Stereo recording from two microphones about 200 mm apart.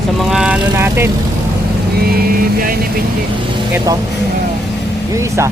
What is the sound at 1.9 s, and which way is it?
Speech, 50° right (ahead or behind).